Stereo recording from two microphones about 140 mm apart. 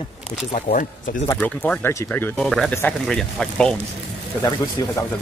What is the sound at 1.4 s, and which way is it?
Speech, 10° left (ahead or behind).